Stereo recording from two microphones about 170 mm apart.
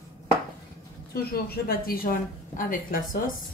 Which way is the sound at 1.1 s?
65° left (ahead or behind).